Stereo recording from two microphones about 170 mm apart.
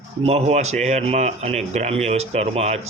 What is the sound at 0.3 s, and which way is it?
Speech, 40° right (ahead or behind).